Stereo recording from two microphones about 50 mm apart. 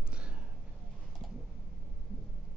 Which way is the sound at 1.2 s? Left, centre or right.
Centre.